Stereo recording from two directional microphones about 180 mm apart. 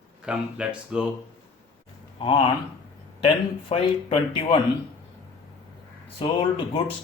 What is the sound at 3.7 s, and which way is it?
Speech, 30° left (ahead or behind).